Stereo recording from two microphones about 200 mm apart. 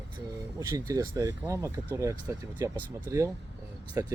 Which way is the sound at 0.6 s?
15° right (ahead or behind).